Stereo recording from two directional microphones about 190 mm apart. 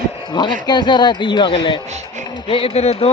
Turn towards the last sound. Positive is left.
turn(degrees=35)  # may be behind; listen again after turning